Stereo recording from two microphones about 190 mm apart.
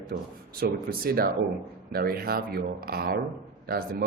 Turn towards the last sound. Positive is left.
turn(degrees=-50)  # may be behind; listen again after turning